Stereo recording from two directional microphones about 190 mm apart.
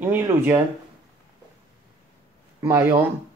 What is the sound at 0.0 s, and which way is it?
Speech, 15° right (ahead or behind).